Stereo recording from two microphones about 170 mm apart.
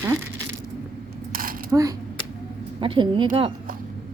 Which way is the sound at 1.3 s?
55° right (ahead or behind).